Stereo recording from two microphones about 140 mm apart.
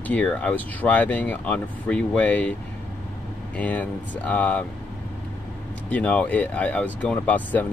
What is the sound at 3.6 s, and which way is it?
Speech, 10° left (ahead or behind).